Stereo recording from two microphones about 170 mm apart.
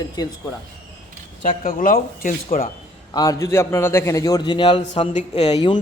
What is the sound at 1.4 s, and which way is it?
Speech, 45° left (ahead or behind).